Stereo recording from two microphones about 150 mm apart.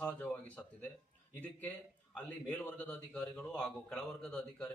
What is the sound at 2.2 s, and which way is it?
A man's voice, 10° left (ahead or behind).